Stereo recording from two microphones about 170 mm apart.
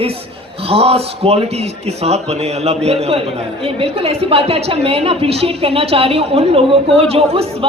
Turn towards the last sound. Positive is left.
turn(degrees=-35)  # may be behind; listen again after turning